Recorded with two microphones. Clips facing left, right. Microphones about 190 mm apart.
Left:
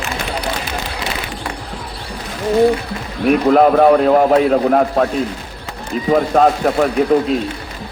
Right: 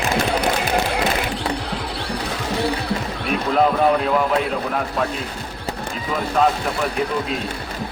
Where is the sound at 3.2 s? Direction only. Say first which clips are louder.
Left 8 dB; 55° left (ahead or behind).